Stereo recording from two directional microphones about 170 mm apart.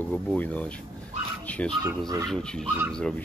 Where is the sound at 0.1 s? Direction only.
10° left (ahead or behind).